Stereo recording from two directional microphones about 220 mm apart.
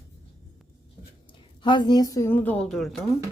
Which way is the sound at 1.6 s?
20° left (ahead or behind).